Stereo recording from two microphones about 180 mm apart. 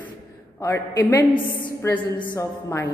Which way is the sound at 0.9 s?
20° left (ahead or behind).